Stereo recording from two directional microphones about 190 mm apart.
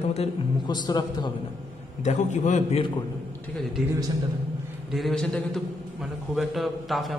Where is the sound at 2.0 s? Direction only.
40° left (ahead or behind).